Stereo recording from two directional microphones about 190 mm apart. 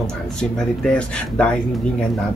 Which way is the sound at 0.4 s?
5° left (ahead or behind).